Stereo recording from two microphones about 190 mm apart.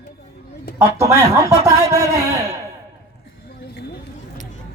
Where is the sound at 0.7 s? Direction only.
15° right (ahead or behind).